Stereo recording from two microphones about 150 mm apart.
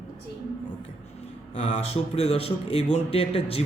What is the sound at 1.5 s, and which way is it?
A man's voice, 40° left (ahead or behind).